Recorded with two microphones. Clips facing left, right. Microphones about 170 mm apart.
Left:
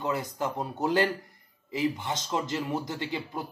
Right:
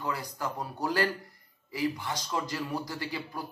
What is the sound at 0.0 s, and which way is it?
A man's voice, 20° left (ahead or behind).